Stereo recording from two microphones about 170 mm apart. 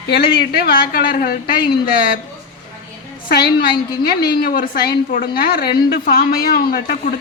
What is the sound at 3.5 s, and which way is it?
A woman's voice, 65° left (ahead or behind).